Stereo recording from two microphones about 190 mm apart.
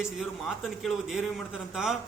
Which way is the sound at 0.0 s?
Centre (ahead or behind).